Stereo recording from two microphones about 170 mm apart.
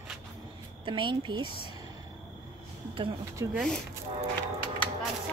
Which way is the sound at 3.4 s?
20° right (ahead or behind).